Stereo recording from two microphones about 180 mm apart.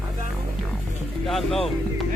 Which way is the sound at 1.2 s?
Centre (ahead or behind).